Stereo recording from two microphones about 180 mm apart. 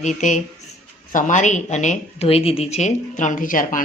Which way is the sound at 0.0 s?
40° left (ahead or behind).